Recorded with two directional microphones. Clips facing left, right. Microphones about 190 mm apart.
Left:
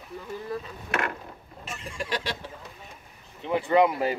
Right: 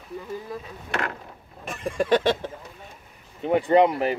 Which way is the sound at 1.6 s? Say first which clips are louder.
Right 10 dB; 55° right (ahead or behind).